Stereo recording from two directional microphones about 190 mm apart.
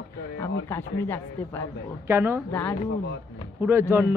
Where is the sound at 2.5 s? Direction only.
10° left (ahead or behind).